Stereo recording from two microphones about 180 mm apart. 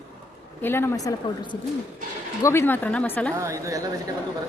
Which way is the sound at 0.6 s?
10° left (ahead or behind).